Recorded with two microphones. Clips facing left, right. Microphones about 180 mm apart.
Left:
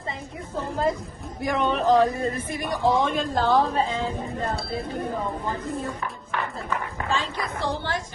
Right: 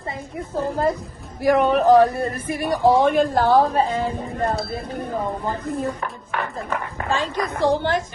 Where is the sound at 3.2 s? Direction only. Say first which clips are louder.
Right 5 dB; 50° right (ahead or behind).